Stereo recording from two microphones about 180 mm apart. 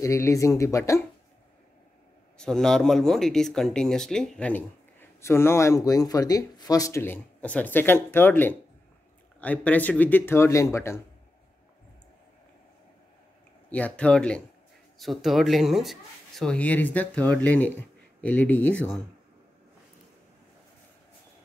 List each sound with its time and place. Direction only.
0.0 s speech: 15° left (ahead or behind)
2.3 s speech: 5° left (ahead or behind)
13.7 s speech: 5° left (ahead or behind)